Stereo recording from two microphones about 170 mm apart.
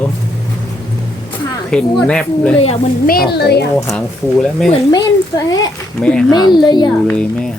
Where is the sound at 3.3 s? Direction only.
70° left (ahead or behind).